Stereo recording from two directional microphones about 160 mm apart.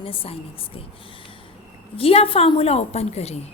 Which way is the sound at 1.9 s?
35° left (ahead or behind).